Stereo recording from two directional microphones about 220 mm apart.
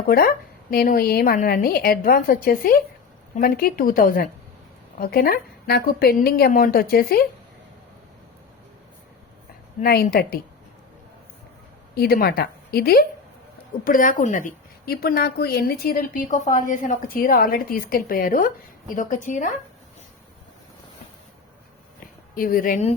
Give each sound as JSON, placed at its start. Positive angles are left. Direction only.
{"t": 0.1, "sound": "a woman's voice", "side_deg": 40}
{"t": 9.8, "sound": "a woman's voice", "side_deg": 45}
{"t": 11.9, "sound": "a woman's voice", "side_deg": 45}
{"t": 22.4, "sound": "a woman's voice", "side_deg": 40}